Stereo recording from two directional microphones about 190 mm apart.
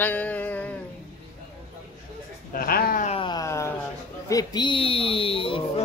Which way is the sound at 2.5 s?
50° left (ahead or behind).